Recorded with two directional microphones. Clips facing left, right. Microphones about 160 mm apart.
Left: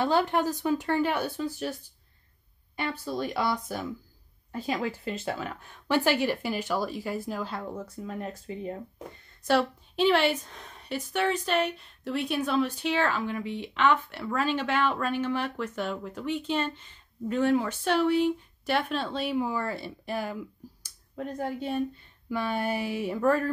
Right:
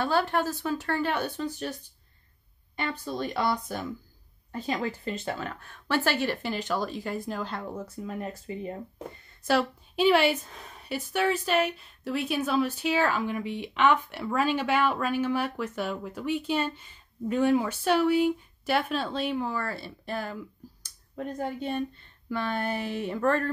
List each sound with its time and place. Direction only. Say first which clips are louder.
0.0 s speech: left 1 dB; 15° left (ahead or behind)
7.7 s speech: right 1 dB; 5° right (ahead or behind); by 20.3 s 10° left (ahead or behind)
20.8 s speech: right 1 dB; centre (ahead or behind)